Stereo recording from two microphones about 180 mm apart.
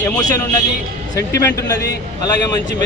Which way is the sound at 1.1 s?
15° left (ahead or behind).